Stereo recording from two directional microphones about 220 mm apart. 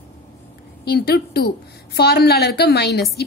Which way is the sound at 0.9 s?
45° left (ahead or behind).